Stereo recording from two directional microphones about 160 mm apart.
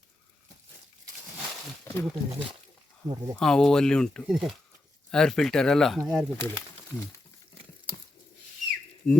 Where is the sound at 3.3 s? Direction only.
5° left (ahead or behind).